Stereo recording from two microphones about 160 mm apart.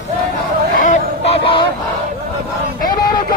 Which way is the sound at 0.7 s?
55° left (ahead or behind).